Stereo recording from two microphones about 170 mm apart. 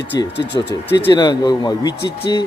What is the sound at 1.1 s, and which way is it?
Speech, 25° left (ahead or behind).